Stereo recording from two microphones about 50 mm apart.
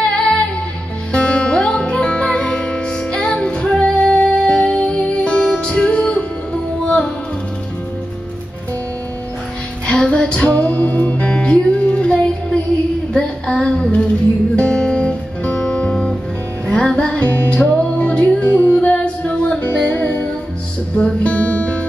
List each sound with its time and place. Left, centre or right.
0.2 s music: left
9.8 s music: left